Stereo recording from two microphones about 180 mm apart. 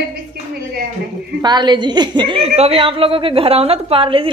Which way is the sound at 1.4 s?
25° right (ahead or behind).